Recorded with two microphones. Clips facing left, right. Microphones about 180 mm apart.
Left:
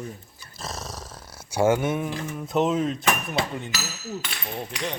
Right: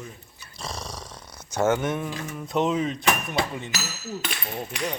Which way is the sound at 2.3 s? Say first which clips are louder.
Left 1 dB; centre (ahead or behind).